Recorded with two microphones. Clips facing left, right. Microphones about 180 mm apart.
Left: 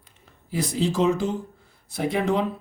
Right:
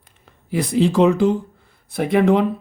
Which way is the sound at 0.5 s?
60° right (ahead or behind).